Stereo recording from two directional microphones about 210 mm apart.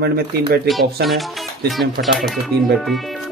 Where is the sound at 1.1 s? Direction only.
Centre (ahead or behind).